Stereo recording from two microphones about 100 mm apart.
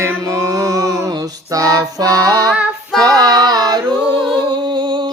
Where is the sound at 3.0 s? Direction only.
40° right (ahead or behind).